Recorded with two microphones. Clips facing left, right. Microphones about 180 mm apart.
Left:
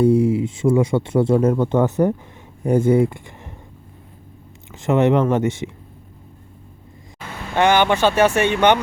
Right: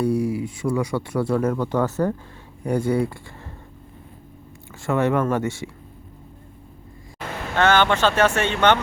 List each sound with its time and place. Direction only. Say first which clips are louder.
0.0 s speech: left 6 dB; 25° left (ahead or behind)
4.7 s speech: left 5 dB; 20° left (ahead or behind)
7.5 s speech: left 2 dB; 15° left (ahead or behind)